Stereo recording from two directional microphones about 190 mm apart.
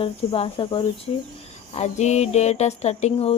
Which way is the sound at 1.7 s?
35° left (ahead or behind).